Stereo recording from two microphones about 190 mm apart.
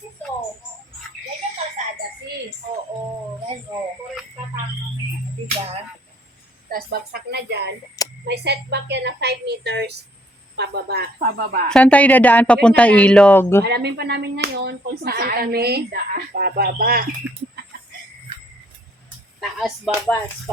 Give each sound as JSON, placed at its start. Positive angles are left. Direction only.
{"t": 1.8, "sound": "a sound", "side_deg": -40}
{"t": 6.7, "sound": "speech", "side_deg": -50}
{"t": 11.7, "sound": "speech", "side_deg": 5}
{"t": 13.7, "sound": "speech", "side_deg": -60}
{"t": 19.4, "sound": "speech", "side_deg": 0}